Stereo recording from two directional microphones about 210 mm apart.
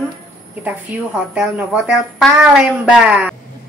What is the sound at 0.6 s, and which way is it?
Speech, 10° right (ahead or behind).